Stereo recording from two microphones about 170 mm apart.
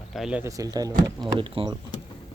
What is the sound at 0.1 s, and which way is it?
Speech, 5° right (ahead or behind).